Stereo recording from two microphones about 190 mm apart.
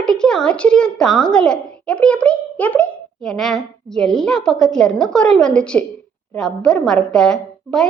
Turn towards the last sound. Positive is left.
turn(degrees=0)  # may be behind; listen again after turning